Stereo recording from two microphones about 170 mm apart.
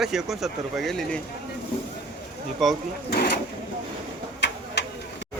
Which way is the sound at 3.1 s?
65° left (ahead or behind).